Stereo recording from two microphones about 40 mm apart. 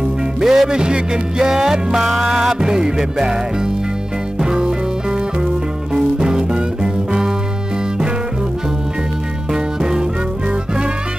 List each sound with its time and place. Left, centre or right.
0.4 s music: centre
9.5 s music: centre